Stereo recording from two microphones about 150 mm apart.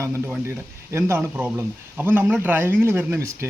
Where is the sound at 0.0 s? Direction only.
20° right (ahead or behind).